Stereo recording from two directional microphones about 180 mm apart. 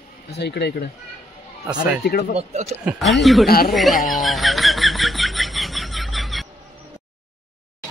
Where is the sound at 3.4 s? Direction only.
55° left (ahead or behind).